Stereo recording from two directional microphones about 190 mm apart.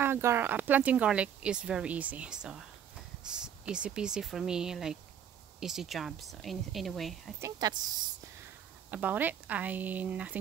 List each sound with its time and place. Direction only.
0.0 s speech: 10° right (ahead or behind)
7.3 s speech: 15° right (ahead or behind)
8.9 s speech: 10° right (ahead or behind)